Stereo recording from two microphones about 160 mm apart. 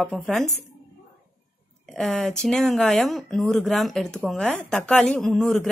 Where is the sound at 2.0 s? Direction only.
5° left (ahead or behind).